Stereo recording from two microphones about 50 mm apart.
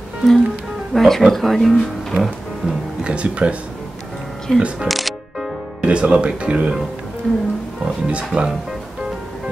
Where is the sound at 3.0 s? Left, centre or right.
Right.